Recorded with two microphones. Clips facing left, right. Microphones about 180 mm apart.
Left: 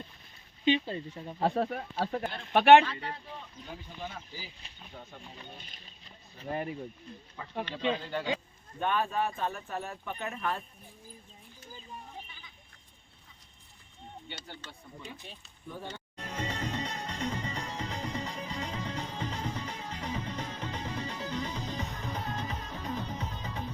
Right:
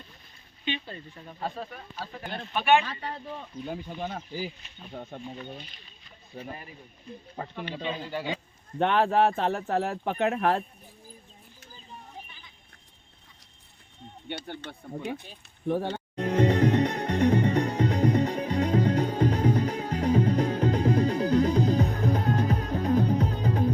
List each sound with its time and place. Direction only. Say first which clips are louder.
0.6 s speech: left 7 dB; 30° left (ahead or behind)
1.4 s speech: left 6 dB; 65° left (ahead or behind)
2.5 s speech: left 4 dB; 75° left (ahead or behind)
3.0 s speech: right 4 dB; 45° right (ahead or behind)
7.6 s speech: left 3 dB; 10° right (ahead or behind)
8.8 s speech: right 8 dB; 75° right (ahead or behind)
14.3 s speech: right 13 dB; 60° right (ahead or behind)
15.6 s music: right 14 dB; 70° right (ahead or behind)